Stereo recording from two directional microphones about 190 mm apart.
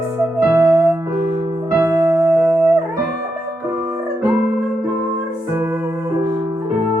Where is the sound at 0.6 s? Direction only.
20° right (ahead or behind).